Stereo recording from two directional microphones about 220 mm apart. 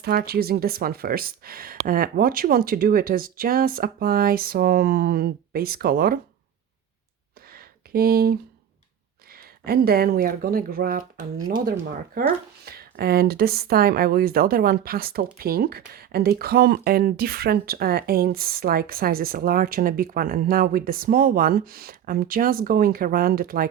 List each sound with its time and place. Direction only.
0.0 s speech: 45° right (ahead or behind)
7.5 s a sound: 45° right (ahead or behind)
9.3 s speech: 45° right (ahead or behind)
12.2 s speech: 40° right (ahead or behind)